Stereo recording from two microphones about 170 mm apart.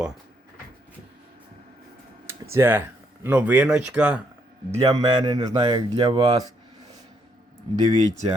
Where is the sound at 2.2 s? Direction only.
15° right (ahead or behind).